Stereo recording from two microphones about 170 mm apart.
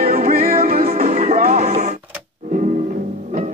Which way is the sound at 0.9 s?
40° right (ahead or behind).